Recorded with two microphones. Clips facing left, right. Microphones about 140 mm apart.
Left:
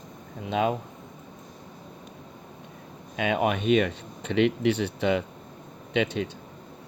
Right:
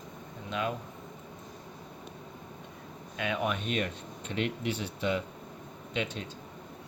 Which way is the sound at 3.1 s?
70° left (ahead or behind).